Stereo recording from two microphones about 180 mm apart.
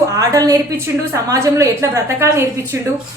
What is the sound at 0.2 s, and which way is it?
A woman's voice, 20° right (ahead or behind).